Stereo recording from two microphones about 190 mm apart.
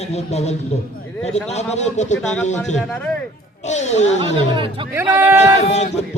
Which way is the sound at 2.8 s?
10° left (ahead or behind).